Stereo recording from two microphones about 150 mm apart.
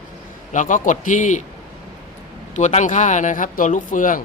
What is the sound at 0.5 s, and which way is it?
Speech, 55° left (ahead or behind).